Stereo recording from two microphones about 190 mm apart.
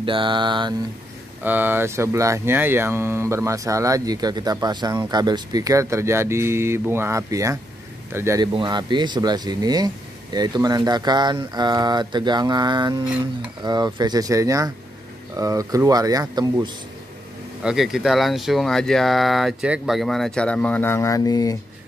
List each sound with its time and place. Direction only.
0.0 s speech: 25° right (ahead or behind)
1.4 s speech: 10° right (ahead or behind)
17.6 s speech: centre (ahead or behind); by 21.5 s 20° left (ahead or behind)